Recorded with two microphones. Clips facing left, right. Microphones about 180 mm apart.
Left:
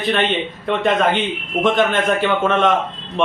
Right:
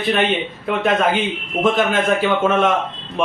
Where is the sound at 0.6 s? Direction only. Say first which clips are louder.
Left 1 dB; 5° right (ahead or behind).